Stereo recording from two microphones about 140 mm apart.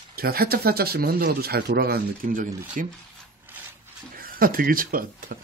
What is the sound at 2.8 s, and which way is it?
Speech, 65° right (ahead or behind).